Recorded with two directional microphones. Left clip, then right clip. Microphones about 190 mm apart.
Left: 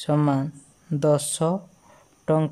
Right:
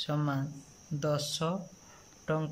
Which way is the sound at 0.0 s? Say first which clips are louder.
Left 11 dB; 35° left (ahead or behind).